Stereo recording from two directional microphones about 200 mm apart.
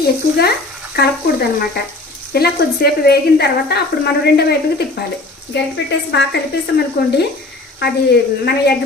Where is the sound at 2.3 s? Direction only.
50° left (ahead or behind).